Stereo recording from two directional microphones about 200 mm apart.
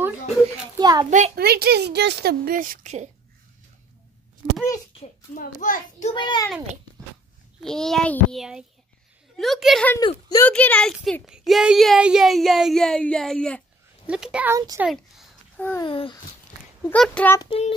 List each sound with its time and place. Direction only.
0.7 s a child's voice: 20° right (ahead or behind)
1.3 s a woman's voice: 55° right (ahead or behind); by 3.1 s 35° right (ahead or behind)
4.6 s a sound: 15° left (ahead or behind)
5.0 s a child's voice: 45° left (ahead or behind)
6.1 s speech: 20° left (ahead or behind)
7.6 s speech: centre (ahead or behind)
9.9 s speech: 20° left (ahead or behind)
10.5 s a child's voice: 5° left (ahead or behind); by 14.9 s 10° right (ahead or behind)
14.9 s a sound: centre (ahead or behind)
15.8 s speech: 25° left (ahead or behind)
16.8 s speech: 5° left (ahead or behind)
17.4 s speech: 30° left (ahead or behind)